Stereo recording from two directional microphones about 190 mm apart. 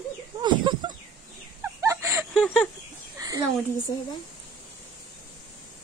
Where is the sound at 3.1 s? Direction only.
15° right (ahead or behind).